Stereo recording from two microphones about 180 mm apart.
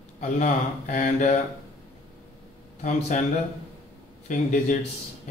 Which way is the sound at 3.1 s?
45° left (ahead or behind).